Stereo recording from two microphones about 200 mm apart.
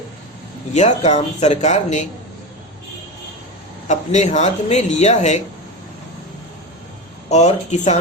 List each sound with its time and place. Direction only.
0.7 s speech: 35° left (ahead or behind)
3.8 s speech: 35° left (ahead or behind)
7.3 s speech: 35° left (ahead or behind)